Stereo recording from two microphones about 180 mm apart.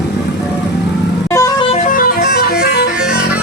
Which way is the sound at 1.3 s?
20° left (ahead or behind).